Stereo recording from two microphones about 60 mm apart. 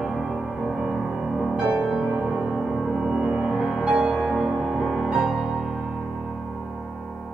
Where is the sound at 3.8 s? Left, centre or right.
Right.